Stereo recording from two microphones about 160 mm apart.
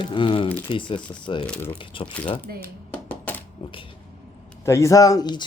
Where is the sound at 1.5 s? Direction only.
10° left (ahead or behind).